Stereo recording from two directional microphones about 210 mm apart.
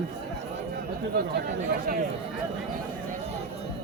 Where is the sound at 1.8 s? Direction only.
40° right (ahead or behind).